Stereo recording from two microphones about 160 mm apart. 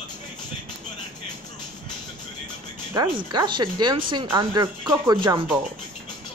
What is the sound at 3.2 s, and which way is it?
Speech, 30° right (ahead or behind).